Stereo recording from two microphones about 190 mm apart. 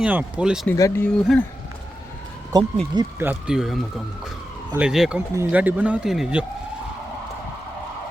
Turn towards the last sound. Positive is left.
turn(degrees=-5)  # may be behind; listen again after turning